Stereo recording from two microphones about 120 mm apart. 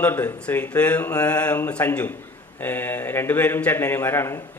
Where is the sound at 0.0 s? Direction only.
10° left (ahead or behind).